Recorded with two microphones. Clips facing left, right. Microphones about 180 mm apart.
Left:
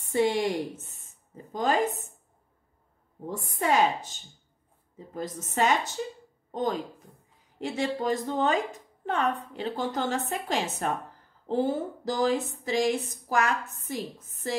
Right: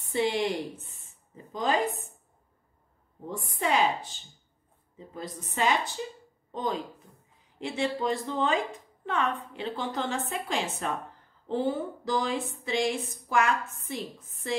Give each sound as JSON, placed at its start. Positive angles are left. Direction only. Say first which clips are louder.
{"t": 0.1, "sound": "speech", "louder": "left 2 dB", "side_deg": 45}
{"t": 3.3, "sound": "speech", "louder": "left 2 dB", "side_deg": 45}